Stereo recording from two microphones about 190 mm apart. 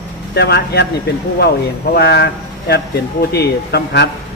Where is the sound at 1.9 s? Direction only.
60° left (ahead or behind).